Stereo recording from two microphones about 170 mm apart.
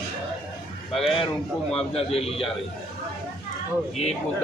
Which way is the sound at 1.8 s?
35° left (ahead or behind).